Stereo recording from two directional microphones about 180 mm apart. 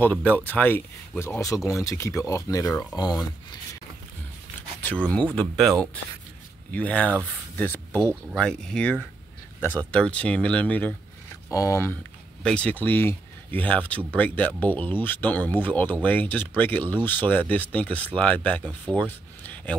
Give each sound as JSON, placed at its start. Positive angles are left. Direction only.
{"t": 0.0, "sound": "speech", "side_deg": 10}
{"t": 4.8, "sound": "speech", "side_deg": 5}
{"t": 18.9, "sound": "a sound", "side_deg": 10}